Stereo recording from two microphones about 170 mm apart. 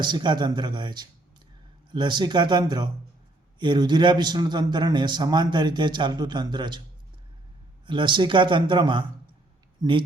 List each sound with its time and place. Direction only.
0.0 s a man's voice: 25° right (ahead or behind)
7.9 s a man's voice: 30° right (ahead or behind)